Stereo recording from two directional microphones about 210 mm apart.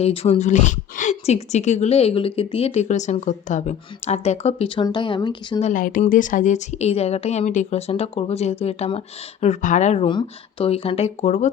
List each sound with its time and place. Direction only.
0.0 s speech: 30° left (ahead or behind)